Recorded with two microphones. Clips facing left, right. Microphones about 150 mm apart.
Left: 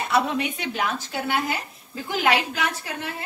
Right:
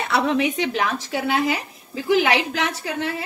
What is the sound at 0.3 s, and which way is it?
A woman's voice, 90° right.